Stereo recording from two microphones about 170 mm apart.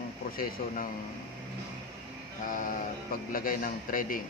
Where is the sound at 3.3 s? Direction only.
55° left (ahead or behind).